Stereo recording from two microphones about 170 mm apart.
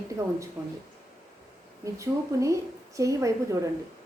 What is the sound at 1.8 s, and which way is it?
A woman's voice, 20° right (ahead or behind).